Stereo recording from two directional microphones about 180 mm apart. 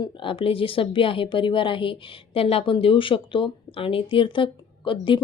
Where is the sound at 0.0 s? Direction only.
30° left (ahead or behind).